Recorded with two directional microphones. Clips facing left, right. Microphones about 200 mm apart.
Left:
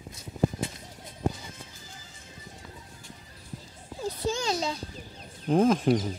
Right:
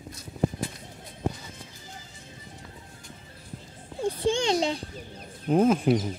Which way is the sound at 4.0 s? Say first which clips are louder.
Right 5 dB; 30° right (ahead or behind).